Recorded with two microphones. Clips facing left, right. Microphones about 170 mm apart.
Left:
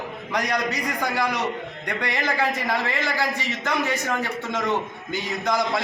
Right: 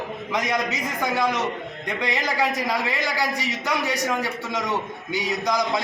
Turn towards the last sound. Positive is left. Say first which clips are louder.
# even
turn(degrees=-15)  # may be behind; listen again after turning